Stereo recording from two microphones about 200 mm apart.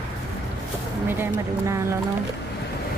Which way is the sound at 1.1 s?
10° right (ahead or behind).